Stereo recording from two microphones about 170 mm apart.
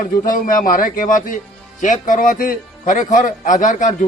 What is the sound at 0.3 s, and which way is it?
A man's voice, 55° left (ahead or behind).